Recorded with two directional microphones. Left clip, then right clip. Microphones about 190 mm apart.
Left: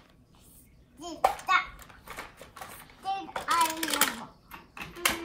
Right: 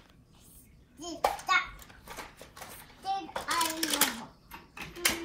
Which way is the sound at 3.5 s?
5° left (ahead or behind).